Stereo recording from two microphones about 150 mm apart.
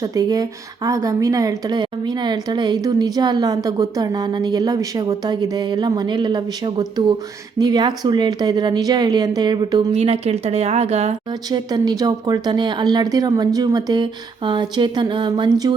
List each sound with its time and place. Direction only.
0.0 s a woman's voice: 25° right (ahead or behind); by 11.1 s 45° right (ahead or behind)
11.4 s a woman's voice: 25° right (ahead or behind)